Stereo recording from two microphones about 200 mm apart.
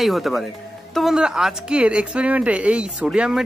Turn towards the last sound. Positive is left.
turn(degrees=0)  # may be behind; listen again after turning